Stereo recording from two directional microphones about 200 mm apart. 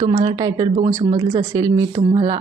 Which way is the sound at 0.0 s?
20° right (ahead or behind).